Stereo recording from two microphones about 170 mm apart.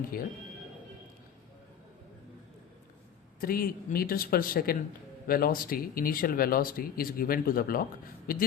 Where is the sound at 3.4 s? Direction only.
60° left (ahead or behind).